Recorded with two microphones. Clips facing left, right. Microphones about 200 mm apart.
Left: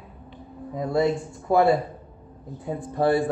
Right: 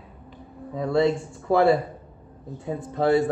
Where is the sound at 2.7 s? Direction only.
25° right (ahead or behind).